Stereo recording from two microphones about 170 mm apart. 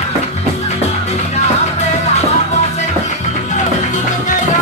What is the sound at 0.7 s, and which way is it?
Music, 40° left (ahead or behind).